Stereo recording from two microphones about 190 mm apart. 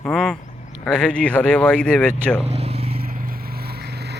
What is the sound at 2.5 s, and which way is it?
Vehicle, 30° right (ahead or behind).